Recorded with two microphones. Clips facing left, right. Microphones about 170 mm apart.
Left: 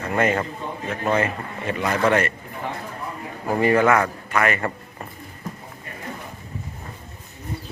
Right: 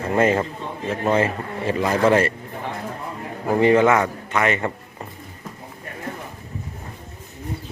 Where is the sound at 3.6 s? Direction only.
20° right (ahead or behind).